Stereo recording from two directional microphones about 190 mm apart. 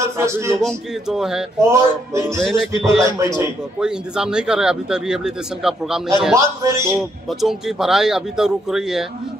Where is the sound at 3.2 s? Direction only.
15° right (ahead or behind).